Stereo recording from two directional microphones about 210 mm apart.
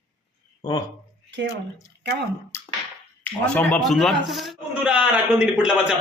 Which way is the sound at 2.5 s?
10° left (ahead or behind).